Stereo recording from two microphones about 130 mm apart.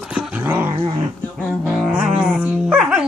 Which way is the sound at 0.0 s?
Centre (ahead or behind).